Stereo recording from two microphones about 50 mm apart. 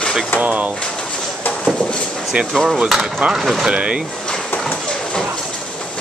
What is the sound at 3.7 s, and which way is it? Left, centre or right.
Speech, right.